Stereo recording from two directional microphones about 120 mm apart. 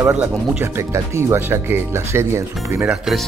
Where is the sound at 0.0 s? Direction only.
15° right (ahead or behind).